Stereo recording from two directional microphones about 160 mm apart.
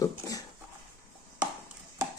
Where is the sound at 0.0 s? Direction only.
20° left (ahead or behind).